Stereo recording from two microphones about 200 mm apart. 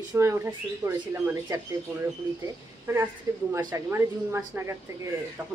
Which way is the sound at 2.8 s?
10° right (ahead or behind).